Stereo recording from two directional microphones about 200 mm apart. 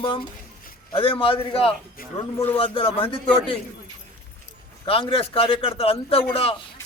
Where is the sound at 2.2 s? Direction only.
15° left (ahead or behind).